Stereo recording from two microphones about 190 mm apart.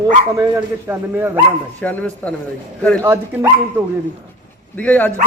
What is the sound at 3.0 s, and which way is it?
Speech, 15° right (ahead or behind).